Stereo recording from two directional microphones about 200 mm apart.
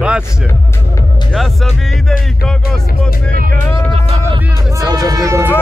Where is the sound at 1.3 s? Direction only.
Centre (ahead or behind).